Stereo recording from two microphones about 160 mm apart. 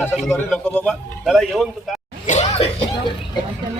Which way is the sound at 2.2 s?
45° left (ahead or behind).